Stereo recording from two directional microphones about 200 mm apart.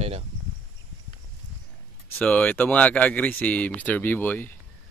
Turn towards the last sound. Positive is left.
turn(degrees=10)  # may be behind; listen again after turning